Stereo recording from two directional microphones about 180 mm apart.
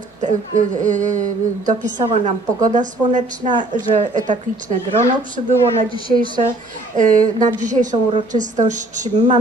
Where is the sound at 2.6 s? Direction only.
45° right (ahead or behind).